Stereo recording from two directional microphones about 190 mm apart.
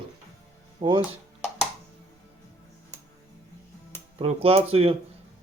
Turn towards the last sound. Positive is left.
turn(degrees=-30)  # may be behind; listen again after turning